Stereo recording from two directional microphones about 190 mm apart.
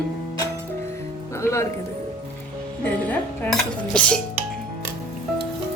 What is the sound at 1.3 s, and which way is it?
Speech, 15° left (ahead or behind).